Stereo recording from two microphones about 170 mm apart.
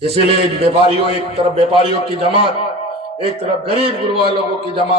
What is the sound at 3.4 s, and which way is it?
A man's voice, 35° right (ahead or behind).